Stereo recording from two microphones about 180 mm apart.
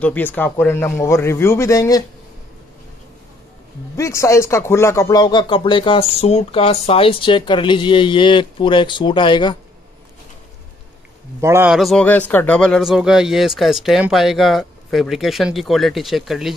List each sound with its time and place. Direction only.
0.0 s a man's voice: 10° left (ahead or behind)
3.9 s speech: 15° left (ahead or behind)
11.4 s a man's voice: 15° right (ahead or behind)
11.7 s speech: centre (ahead or behind)